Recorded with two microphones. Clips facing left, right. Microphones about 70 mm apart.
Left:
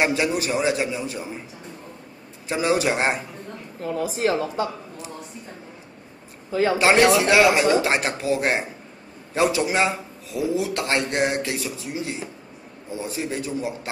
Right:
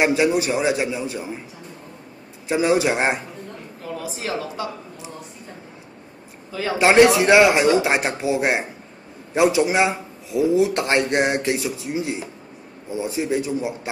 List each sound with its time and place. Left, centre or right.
0.0 s a man's voice: centre
2.4 s a man's voice: centre
3.8 s speech: left
6.5 s a man's voice: left
7.0 s a man's voice: centre